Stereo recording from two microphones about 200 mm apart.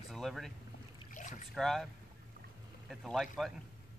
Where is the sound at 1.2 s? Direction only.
40° left (ahead or behind).